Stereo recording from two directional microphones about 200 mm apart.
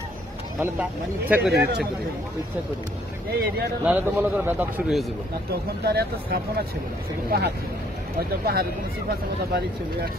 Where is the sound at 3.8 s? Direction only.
10° right (ahead or behind).